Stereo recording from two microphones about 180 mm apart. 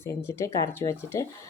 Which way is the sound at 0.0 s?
15° left (ahead or behind).